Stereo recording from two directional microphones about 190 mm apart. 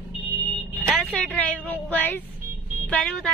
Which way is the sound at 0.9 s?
5° left (ahead or behind).